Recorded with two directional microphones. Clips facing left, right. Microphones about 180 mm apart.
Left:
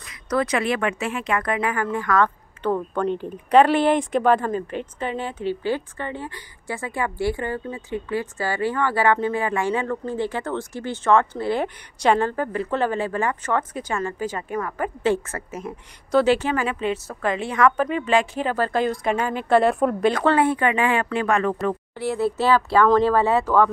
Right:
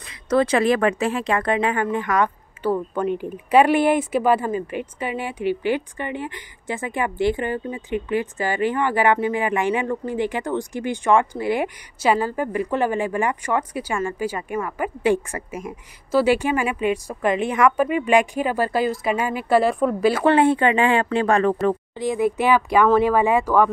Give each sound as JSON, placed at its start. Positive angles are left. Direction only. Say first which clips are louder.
{"t": 0.0, "sound": "speech", "louder": "right 4 dB", "side_deg": -25}
{"t": 20.3, "sound": "speech", "louder": "right 3 dB", "side_deg": -25}
{"t": 21.9, "sound": "speech", "louder": "right 2 dB", "side_deg": -15}